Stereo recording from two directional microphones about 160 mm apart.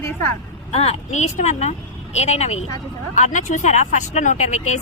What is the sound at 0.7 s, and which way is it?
Speech, 40° left (ahead or behind).